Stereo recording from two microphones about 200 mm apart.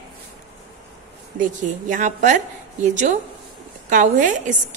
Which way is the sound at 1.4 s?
40° right (ahead or behind).